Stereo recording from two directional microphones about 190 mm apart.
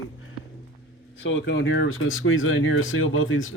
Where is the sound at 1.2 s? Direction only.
80° left.